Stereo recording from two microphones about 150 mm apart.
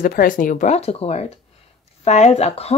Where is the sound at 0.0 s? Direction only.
70° left (ahead or behind).